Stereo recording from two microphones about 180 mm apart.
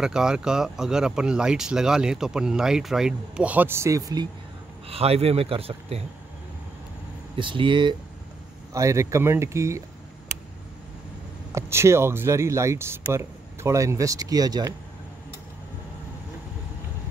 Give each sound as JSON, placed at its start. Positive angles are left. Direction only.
{"t": 0.0, "sound": "speech", "side_deg": -5}
{"t": 4.8, "sound": "a man's voice", "side_deg": -35}
{"t": 7.3, "sound": "speech", "side_deg": -25}
{"t": 8.7, "sound": "speech", "side_deg": -15}
{"t": 11.5, "sound": "speech", "side_deg": -15}